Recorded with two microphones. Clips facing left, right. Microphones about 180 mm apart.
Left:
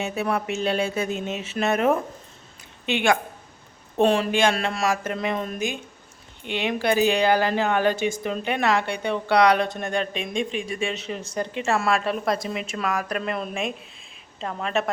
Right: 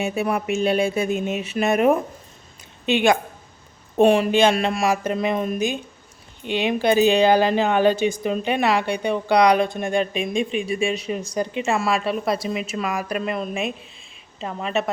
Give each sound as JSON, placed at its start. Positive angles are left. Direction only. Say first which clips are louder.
{"t": 0.0, "sound": "speech", "louder": "right 3 dB", "side_deg": -10}